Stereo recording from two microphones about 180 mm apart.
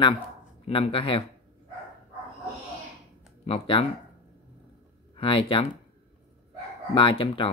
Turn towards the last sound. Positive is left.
turn(degrees=30)  # may be behind; listen again after turning